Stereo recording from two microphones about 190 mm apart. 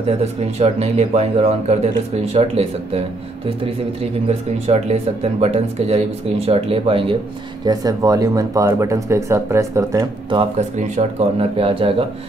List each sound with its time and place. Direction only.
0.2 s speech: 35° right (ahead or behind)
4.0 s speech: 35° right (ahead or behind); by 10.0 s 15° right (ahead or behind)
10.8 s speech: 35° right (ahead or behind)